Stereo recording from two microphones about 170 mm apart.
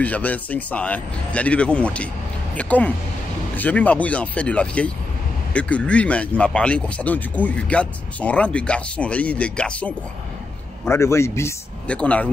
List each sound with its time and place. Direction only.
0.0 s speech: 10° left (ahead or behind)